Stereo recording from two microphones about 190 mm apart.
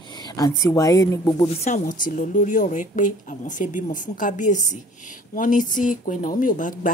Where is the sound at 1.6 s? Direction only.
40° left (ahead or behind).